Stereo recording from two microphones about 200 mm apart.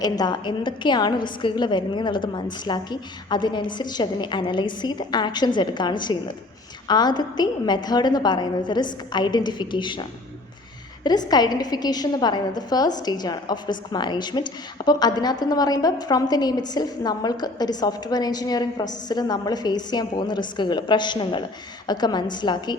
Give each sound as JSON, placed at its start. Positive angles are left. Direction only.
{"t": 0.0, "sound": "a woman's voice", "side_deg": 20}